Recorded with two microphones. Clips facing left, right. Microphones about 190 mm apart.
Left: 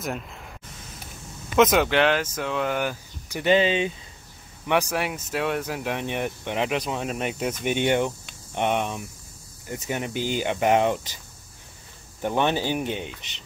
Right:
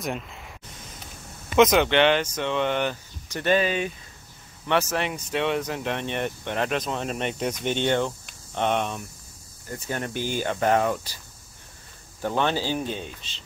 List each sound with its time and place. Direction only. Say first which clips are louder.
1.6 s speech: right 1 dB; 5° left (ahead or behind); by 3.9 s 25° left (ahead or behind)
4.6 s speech: even; 10° left (ahead or behind)
12.2 s speech: left 1 dB; 15° left (ahead or behind)